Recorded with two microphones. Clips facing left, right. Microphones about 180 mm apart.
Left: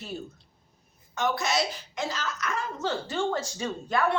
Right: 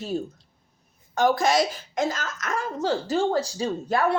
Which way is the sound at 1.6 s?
45° right (ahead or behind).